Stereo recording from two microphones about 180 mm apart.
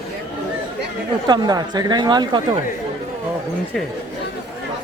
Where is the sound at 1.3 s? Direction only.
25° right (ahead or behind).